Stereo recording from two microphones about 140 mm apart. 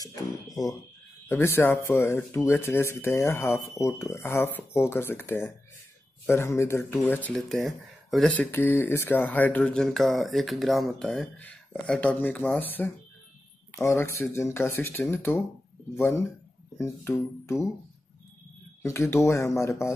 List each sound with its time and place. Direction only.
0.0 s speech: 25° left (ahead or behind)
1.3 s speech: 15° left (ahead or behind)
7.3 s speech: centre (ahead or behind)
8.3 s speech: 15° left (ahead or behind)
18.8 s speech: 20° left (ahead or behind)